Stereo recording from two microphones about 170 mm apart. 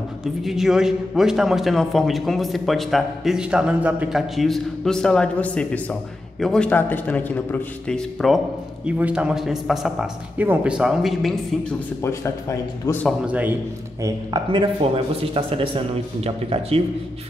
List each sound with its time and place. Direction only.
0.2 s a man's voice: centre (ahead or behind)
8.8 s a man's voice: 10° right (ahead or behind)
12.0 s a man's voice: 15° left (ahead or behind)
13.3 s a man's voice: 10° right (ahead or behind)
14.0 s speech: 25° right (ahead or behind)